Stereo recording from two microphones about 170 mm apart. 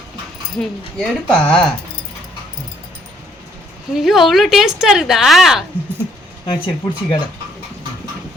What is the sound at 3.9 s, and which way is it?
Speech, centre (ahead or behind).